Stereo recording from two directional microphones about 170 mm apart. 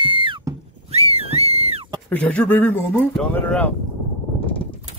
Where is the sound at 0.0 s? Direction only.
30° right (ahead or behind).